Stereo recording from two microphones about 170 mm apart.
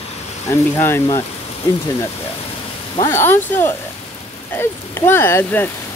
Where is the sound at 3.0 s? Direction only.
15° left (ahead or behind).